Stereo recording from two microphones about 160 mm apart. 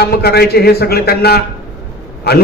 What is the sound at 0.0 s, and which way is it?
A man's voice, 75° left (ahead or behind).